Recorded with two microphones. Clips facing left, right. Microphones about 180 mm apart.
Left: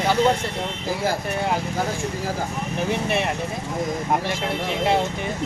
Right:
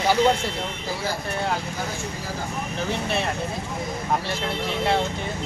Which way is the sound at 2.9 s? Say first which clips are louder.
Left 3 dB; 15° left (ahead or behind).